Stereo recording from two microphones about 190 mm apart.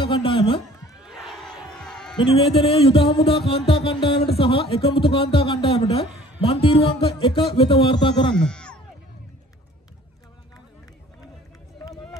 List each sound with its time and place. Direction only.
0.0 s a sound: 30° left (ahead or behind)
1.0 s battle cry: centre (ahead or behind)
2.4 s music: 30° left (ahead or behind)
3.4 s speech: 30° left (ahead or behind)
8.4 s music: 5° left (ahead or behind)
11.8 s run: 20° left (ahead or behind)